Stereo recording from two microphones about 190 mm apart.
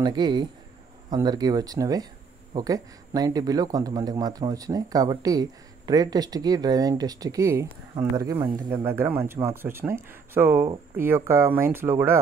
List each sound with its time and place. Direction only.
0.0 s a man's voice: 25° right (ahead or behind)